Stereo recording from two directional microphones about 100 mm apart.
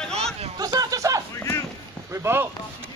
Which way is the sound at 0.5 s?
40° right (ahead or behind).